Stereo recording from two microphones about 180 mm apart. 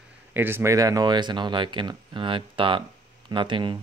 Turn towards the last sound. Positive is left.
turn(degrees=-25)  # may be behind; listen again after turning